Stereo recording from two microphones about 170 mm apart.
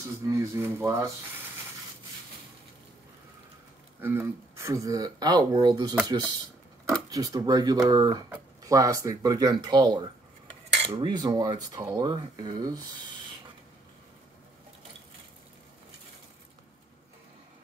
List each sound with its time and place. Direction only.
0.4 s speech: 15° right (ahead or behind)
4.0 s speech: 15° right (ahead or behind)